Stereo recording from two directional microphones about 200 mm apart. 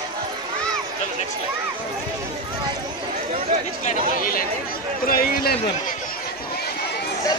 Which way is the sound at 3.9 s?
45° left (ahead or behind).